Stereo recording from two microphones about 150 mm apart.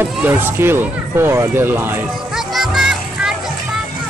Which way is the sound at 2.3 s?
5° right (ahead or behind).